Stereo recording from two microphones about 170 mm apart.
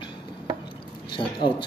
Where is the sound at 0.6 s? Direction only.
30° left (ahead or behind).